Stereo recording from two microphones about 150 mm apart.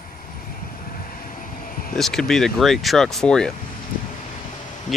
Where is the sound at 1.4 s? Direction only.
70° left (ahead or behind).